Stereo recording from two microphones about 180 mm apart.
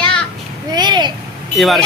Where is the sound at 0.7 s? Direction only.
25° right (ahead or behind).